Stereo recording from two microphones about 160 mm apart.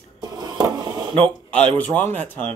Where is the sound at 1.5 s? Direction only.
10° left (ahead or behind).